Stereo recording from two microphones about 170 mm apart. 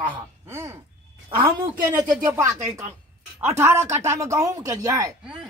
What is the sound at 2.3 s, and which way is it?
Speech, 15° right (ahead or behind).